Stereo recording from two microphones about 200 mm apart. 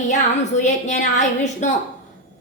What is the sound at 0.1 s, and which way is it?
A woman's voice, 35° left (ahead or behind).